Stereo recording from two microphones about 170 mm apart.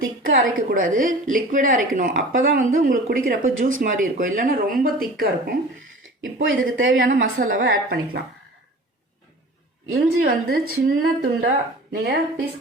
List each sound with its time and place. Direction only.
0.0 s a woman's voice: 60° right (ahead or behind)
9.9 s a woman's voice: 65° right (ahead or behind)